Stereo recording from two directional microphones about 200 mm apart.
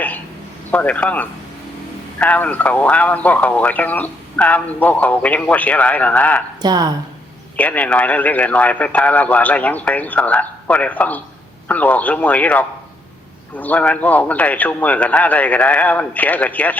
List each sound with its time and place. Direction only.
0.7 s speech: 10° left (ahead or behind)
6.6 s a woman's voice: 20° right (ahead or behind)
7.5 s speech: 10° left (ahead or behind)